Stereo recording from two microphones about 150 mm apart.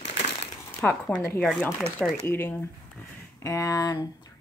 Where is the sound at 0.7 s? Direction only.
10° left (ahead or behind).